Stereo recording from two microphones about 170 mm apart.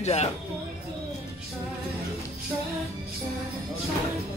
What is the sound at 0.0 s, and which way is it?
Speech, 40° left (ahead or behind).